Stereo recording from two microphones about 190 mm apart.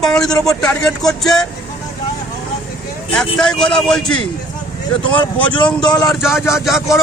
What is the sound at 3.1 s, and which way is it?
A man's voice, 5° left (ahead or behind).